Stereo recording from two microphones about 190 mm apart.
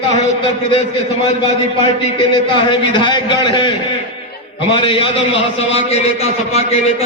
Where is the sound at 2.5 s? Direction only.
25° left (ahead or behind).